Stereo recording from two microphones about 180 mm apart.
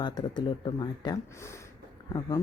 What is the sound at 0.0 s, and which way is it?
Speech, 25° left (ahead or behind).